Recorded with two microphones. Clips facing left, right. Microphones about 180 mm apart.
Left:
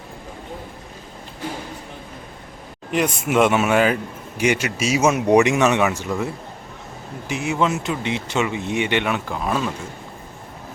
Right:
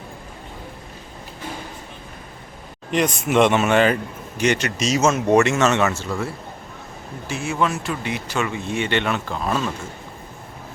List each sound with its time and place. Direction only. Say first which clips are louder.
2.9 s speech: right 1 dB; 5° left (ahead or behind)